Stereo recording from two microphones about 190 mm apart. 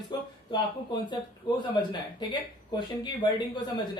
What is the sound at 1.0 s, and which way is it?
Speech, 25° left (ahead or behind).